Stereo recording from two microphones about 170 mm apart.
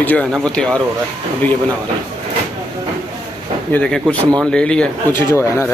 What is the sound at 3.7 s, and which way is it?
Speech, 5° left (ahead or behind).